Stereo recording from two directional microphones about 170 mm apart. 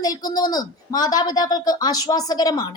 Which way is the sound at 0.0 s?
20° left (ahead or behind).